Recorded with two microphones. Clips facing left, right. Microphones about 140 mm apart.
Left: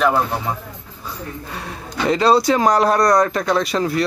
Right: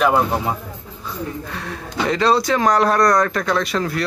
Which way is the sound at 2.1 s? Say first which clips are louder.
Left 3 dB; 5° left (ahead or behind).